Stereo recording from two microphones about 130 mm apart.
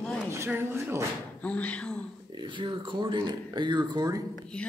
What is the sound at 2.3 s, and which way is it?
Speech, 40° right (ahead or behind).